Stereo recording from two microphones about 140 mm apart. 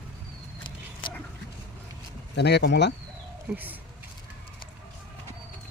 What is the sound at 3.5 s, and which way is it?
Speech, 10° right (ahead or behind).